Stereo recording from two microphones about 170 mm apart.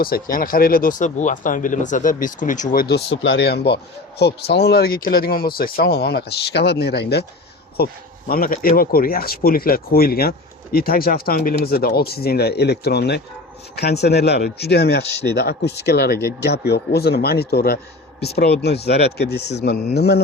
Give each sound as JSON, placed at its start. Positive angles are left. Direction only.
{"t": 0.0, "sound": "speech", "side_deg": 60}
{"t": 2.8, "sound": "speech", "side_deg": 80}
{"t": 7.8, "sound": "speech", "side_deg": 65}